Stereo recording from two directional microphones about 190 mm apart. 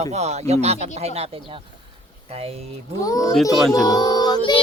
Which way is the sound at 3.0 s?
20° left (ahead or behind).